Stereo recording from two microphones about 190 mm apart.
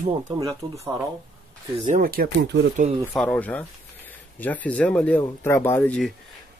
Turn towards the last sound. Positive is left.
turn(degrees=5)  # may be behind; listen again after turning